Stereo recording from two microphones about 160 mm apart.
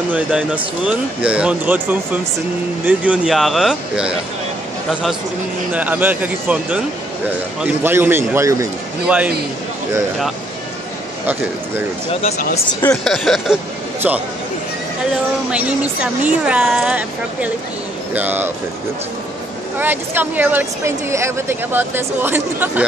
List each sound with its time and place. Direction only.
0.1 s speech: 5° right (ahead or behind)
5.7 s speech: 10° right (ahead or behind)
9.0 s speech: 10° right (ahead or behind)
12.1 s speech: 40° left (ahead or behind)
12.8 s speech: 5° left (ahead or behind)
15.5 s speech: 10° right (ahead or behind)
19.8 s speech: 10° right (ahead or behind)